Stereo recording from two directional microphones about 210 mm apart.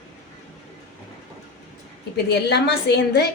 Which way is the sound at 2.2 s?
50° left (ahead or behind).